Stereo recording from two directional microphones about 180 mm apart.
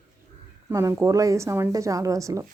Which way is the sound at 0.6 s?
15° right (ahead or behind).